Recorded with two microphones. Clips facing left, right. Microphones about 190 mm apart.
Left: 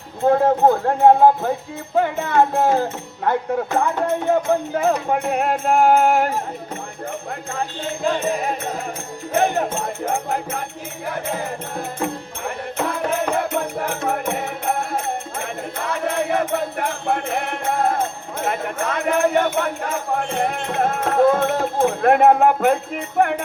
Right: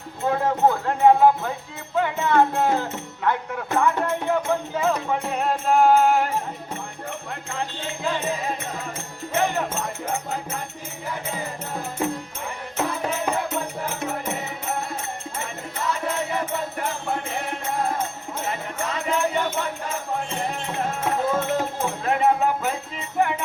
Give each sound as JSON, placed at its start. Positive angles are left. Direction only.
{"t": 0.3, "sound": "speech", "side_deg": 45}
{"t": 10.2, "sound": "music", "side_deg": 55}
{"t": 12.5, "sound": "music", "side_deg": 55}